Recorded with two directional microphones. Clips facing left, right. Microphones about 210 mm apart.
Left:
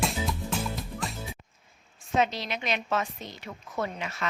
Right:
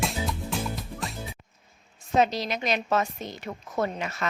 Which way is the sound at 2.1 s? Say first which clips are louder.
Right 3 dB; 40° right (ahead or behind).